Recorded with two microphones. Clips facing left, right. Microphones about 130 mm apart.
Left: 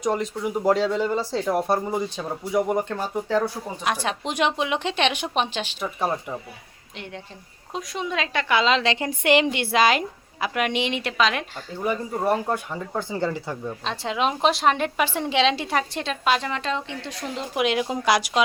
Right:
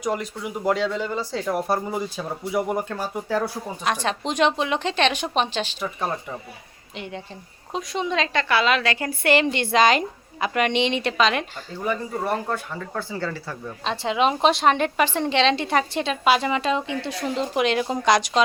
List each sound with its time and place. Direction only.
0.0 s a woman's voice: centre (ahead or behind)
4.0 s a woman's voice: 10° left (ahead or behind)
11.9 s a woman's voice: 15° left (ahead or behind)
13.8 s a woman's voice: centre (ahead or behind)